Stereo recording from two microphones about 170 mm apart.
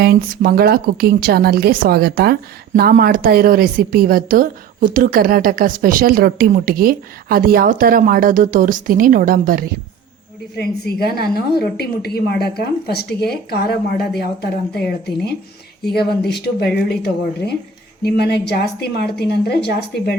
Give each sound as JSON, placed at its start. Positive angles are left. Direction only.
{"t": 0.0, "sound": "a woman's voice", "side_deg": -65}
{"t": 10.6, "sound": "a woman's voice", "side_deg": 70}